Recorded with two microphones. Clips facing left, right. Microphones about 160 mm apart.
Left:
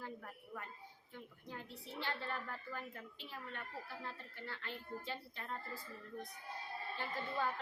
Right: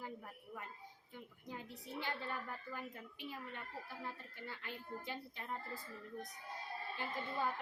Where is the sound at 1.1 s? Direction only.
15° right (ahead or behind).